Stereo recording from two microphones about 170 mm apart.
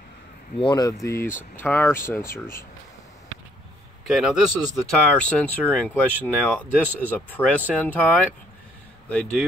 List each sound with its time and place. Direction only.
0.6 s speech: 25° left (ahead or behind)
1.0 s speech: 15° left (ahead or behind)
4.0 s a man's voice: centre (ahead or behind)
4.7 s speech: 5° left (ahead or behind)